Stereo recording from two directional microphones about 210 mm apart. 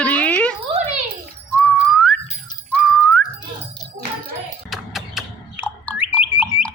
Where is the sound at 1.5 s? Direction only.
5° left (ahead or behind).